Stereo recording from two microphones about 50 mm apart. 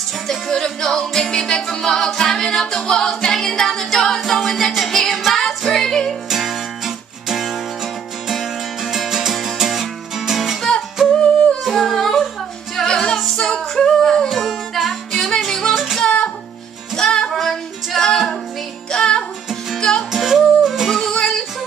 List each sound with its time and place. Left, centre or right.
0.3 s a capella: centre
4.2 s music: centre
6.2 s music: centre
11.6 s yodeling: centre
12.7 s music: centre
13.4 s singing: centre
14.3 s music: centre
15.7 s music: centre
16.0 s music: centre
20.2 s music: centre
21.1 s music: centre